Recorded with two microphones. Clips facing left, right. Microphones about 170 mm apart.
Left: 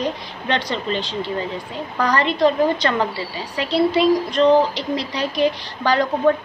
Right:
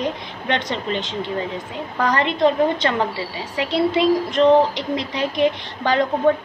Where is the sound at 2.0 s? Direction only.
25° right (ahead or behind).